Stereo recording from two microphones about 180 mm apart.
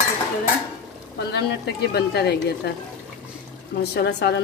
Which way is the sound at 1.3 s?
65° left (ahead or behind).